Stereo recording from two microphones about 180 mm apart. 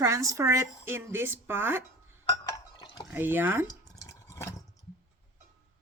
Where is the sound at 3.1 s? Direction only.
10° right (ahead or behind).